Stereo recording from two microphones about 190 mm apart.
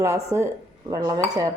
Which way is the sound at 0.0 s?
15° right (ahead or behind).